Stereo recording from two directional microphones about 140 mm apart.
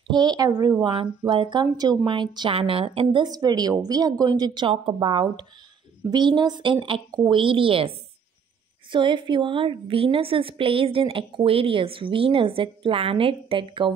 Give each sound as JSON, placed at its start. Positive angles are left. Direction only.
{"t": 0.1, "sound": "a woman's voice", "side_deg": -30}
{"t": 8.9, "sound": "a woman's voice", "side_deg": -35}